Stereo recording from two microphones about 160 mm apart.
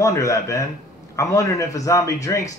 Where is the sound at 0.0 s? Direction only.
20° left (ahead or behind).